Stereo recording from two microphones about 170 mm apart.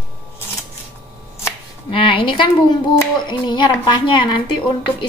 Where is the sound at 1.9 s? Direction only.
30° left (ahead or behind).